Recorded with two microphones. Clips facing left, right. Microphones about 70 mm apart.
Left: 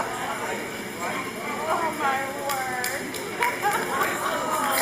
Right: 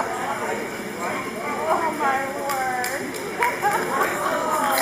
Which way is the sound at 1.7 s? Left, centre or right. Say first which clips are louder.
Right 3 dB; centre.